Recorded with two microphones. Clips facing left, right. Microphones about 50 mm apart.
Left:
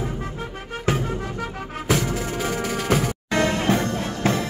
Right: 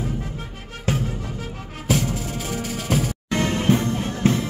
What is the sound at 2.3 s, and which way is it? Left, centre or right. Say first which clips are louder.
Music: left 3 dB; left.